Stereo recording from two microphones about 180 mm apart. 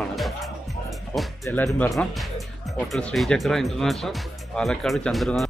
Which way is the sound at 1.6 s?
15° left (ahead or behind).